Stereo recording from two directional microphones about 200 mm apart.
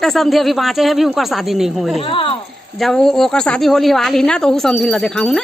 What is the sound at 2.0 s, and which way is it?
Speech, 25° left (ahead or behind).